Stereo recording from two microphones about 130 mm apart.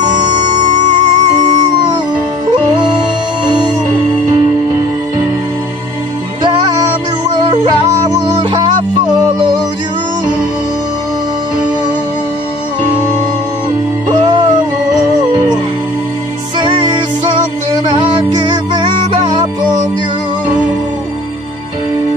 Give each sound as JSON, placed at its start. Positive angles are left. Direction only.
{"t": 0.2, "sound": "music", "side_deg": -35}
{"t": 0.6, "sound": "music", "side_deg": -70}
{"t": 7.4, "sound": "music", "side_deg": -30}
{"t": 8.4, "sound": "music", "side_deg": -45}
{"t": 16.5, "sound": "music", "side_deg": -40}